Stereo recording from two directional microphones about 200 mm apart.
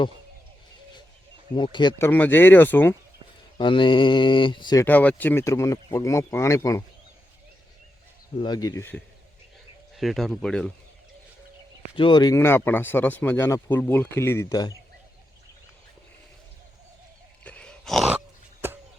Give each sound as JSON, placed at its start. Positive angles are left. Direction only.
{"t": 1.5, "sound": "speech", "side_deg": 25}
{"t": 2.0, "sound": "speech", "side_deg": 10}
{"t": 3.6, "sound": "speech", "side_deg": 25}
{"t": 8.4, "sound": "speech", "side_deg": 20}
{"t": 9.9, "sound": "speech", "side_deg": 0}
{"t": 11.9, "sound": "speech", "side_deg": 25}
{"t": 17.4, "sound": "dog", "side_deg": 5}